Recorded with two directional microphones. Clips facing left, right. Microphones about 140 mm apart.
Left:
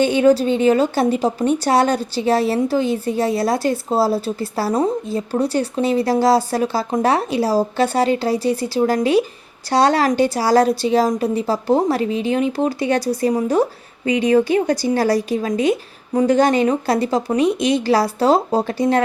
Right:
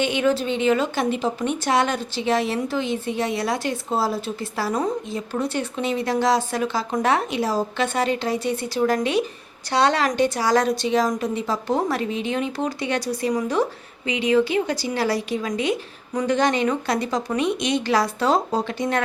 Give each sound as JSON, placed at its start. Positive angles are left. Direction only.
{"t": 0.0, "sound": "a woman's voice", "side_deg": 40}